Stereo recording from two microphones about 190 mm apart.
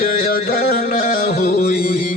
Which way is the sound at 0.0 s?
50° left (ahead or behind).